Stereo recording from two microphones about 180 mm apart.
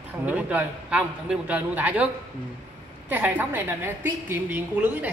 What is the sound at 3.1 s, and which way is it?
A man's voice, 10° right (ahead or behind).